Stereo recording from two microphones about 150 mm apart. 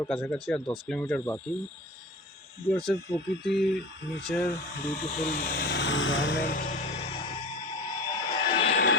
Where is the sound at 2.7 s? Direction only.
40° left (ahead or behind).